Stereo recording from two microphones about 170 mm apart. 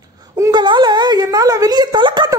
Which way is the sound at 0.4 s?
25° right (ahead or behind).